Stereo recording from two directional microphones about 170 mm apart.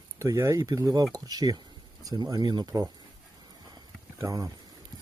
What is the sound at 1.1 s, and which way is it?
Speech, 20° right (ahead or behind).